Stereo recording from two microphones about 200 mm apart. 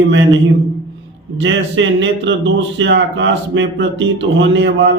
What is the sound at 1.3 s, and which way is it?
A man's voice, 65° right (ahead or behind).